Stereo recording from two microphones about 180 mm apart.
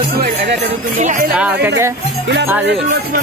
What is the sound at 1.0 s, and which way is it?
Music, 45° right (ahead or behind).